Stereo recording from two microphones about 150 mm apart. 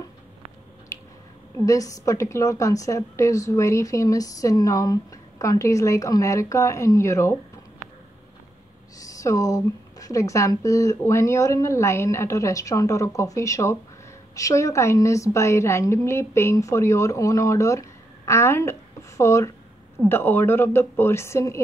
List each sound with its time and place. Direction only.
1.7 s a woman's voice: 20° left (ahead or behind)
9.0 s a woman's voice: 20° left (ahead or behind)